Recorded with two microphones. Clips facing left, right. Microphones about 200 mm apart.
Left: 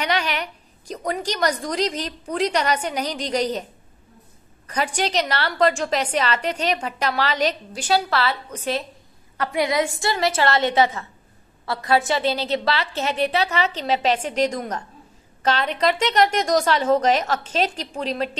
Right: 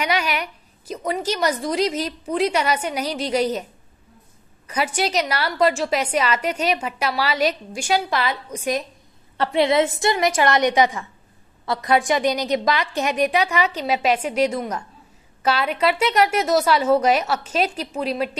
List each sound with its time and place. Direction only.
0.0 s a sound: 10° right (ahead or behind)
1.2 s a woman's voice: 5° right (ahead or behind)
4.6 s a woman's voice: 10° right (ahead or behind)
9.4 s a woman's voice: 25° right (ahead or behind); by 18.3 s 10° right (ahead or behind)